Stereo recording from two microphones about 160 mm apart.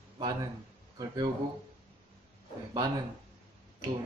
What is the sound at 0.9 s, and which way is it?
Speech, 25° right (ahead or behind).